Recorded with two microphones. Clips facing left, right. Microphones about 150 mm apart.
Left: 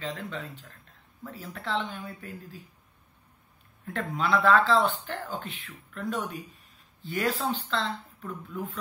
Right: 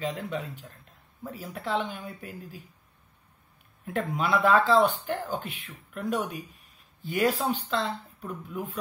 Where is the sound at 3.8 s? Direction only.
15° right (ahead or behind).